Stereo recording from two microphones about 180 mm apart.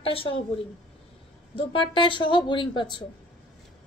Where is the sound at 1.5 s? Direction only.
30° left (ahead or behind).